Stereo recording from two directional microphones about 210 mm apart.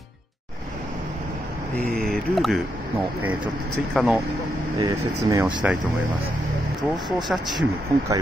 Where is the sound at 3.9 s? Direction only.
5° right (ahead or behind).